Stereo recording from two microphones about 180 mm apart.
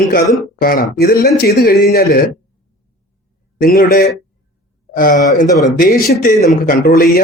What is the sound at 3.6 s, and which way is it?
A man's voice, 55° left (ahead or behind).